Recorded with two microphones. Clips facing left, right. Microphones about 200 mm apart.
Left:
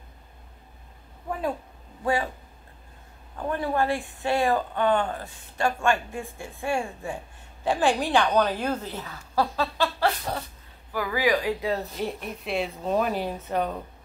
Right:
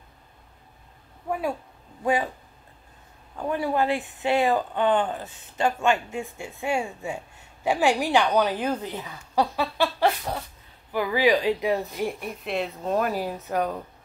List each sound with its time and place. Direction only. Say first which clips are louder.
3.3 s speech: right 1 dB; 15° right (ahead or behind)
12.4 s speech: even; centre (ahead or behind)